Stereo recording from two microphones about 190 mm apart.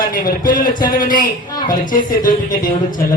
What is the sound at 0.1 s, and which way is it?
Speech, 45° left (ahead or behind).